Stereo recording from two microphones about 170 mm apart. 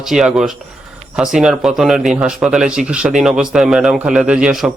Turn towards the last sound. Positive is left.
turn(degrees=-5)  # may be behind; listen again after turning